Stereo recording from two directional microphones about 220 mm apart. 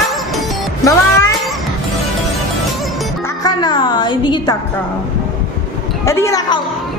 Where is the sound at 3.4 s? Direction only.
20° left (ahead or behind).